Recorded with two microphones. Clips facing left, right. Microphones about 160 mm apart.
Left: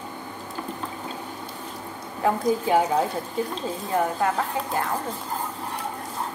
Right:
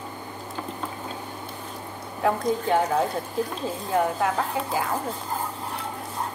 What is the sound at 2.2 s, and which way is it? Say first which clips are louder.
A woman's voice: left 1 dB; centre (ahead or behind).